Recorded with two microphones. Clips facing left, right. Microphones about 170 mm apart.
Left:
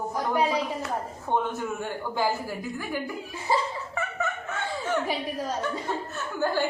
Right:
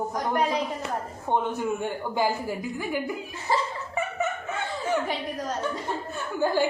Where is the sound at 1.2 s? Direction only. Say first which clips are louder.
Right 2 dB; 15° right (ahead or behind).